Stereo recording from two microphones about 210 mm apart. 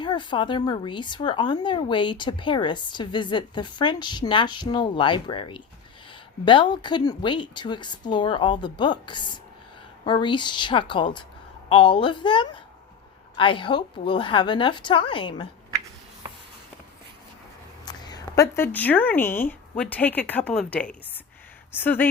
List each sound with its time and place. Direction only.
0.0 s speech: 20° left (ahead or behind)
17.8 s speech: 20° left (ahead or behind)